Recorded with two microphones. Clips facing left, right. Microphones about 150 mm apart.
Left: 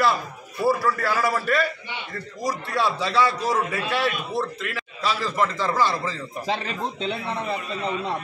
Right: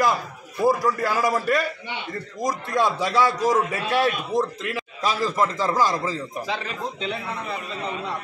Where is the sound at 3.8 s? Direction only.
40° right (ahead or behind).